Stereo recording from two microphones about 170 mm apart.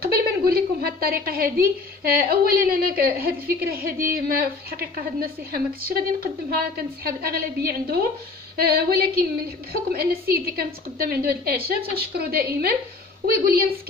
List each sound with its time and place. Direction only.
0.0 s a woman's voice: 65° right (ahead or behind)